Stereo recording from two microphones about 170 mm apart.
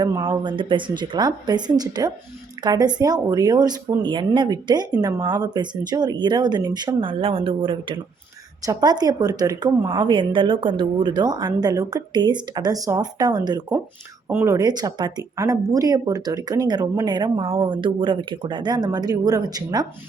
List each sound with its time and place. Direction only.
0.0 s speech: 25° right (ahead or behind)